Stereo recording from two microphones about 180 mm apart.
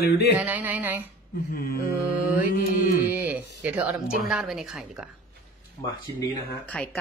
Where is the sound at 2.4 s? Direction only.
50° left (ahead or behind).